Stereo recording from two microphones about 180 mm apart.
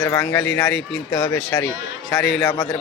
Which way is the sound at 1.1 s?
20° left (ahead or behind).